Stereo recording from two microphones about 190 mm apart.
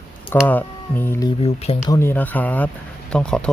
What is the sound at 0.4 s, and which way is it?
Speech, 10° left (ahead or behind).